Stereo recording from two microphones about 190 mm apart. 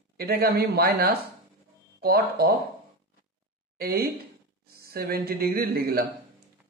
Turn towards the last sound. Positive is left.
turn(degrees=-55)  # may be behind; listen again after turning